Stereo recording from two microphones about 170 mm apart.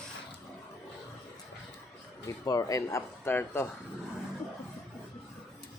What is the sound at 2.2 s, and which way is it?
Speech, 20° left (ahead or behind).